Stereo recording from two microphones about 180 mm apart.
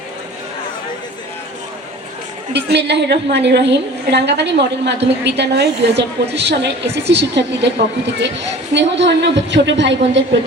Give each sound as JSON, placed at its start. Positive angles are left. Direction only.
{"t": 2.5, "sound": "a woman's voice", "side_deg": -65}